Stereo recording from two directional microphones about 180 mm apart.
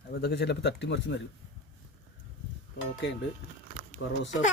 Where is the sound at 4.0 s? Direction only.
90° left.